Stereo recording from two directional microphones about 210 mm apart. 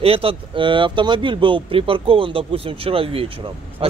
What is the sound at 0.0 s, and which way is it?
Speech, 25° right (ahead or behind).